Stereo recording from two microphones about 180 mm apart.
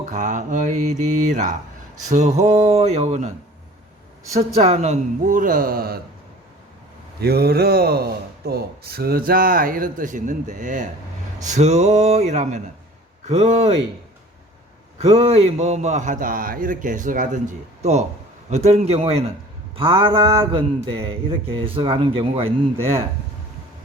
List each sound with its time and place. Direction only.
0.0 s a man's voice: 40° right (ahead or behind)
4.4 s a man's voice: 35° right (ahead or behind); by 6.0 s 55° right (ahead or behind)
7.2 s a man's voice: 60° right (ahead or behind); by 13.7 s 35° right (ahead or behind)
14.9 s a man's voice: 35° right (ahead or behind)
22.8 s speech: 15° right (ahead or behind)